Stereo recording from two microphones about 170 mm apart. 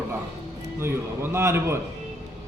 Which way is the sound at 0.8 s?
15° right (ahead or behind).